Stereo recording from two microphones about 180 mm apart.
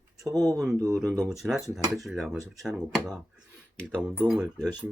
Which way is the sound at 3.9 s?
10° right (ahead or behind).